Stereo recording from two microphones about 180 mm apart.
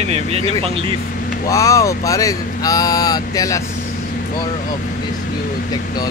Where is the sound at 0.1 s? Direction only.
35° right (ahead or behind).